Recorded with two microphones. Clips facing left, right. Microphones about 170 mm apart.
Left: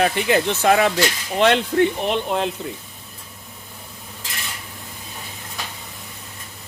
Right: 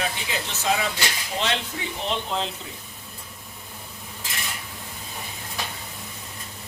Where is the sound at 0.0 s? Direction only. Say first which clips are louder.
Left 11 dB; 60° left (ahead or behind).